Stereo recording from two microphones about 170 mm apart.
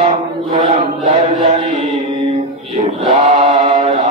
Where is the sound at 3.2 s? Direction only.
40° right (ahead or behind).